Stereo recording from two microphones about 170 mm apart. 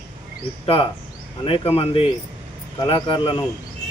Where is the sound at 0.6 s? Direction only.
30° left (ahead or behind).